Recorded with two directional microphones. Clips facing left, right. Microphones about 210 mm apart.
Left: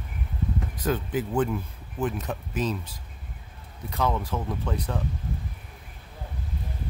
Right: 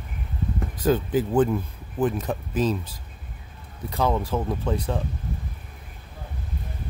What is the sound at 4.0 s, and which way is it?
Speech, 30° right (ahead or behind).